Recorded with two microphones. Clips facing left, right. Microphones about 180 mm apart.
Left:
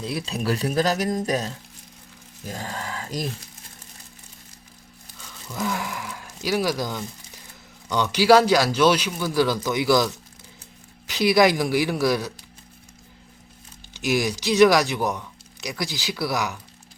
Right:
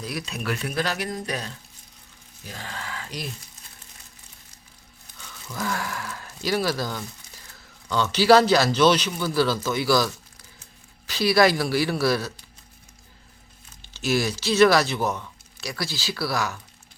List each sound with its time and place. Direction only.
0.0 s speech: 30° left (ahead or behind)
2.5 s a sound: 40° left (ahead or behind)
5.6 s speech: 15° left (ahead or behind)
13.9 s speech: 15° left (ahead or behind)